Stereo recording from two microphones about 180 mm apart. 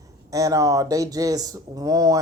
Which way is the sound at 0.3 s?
20° right (ahead or behind).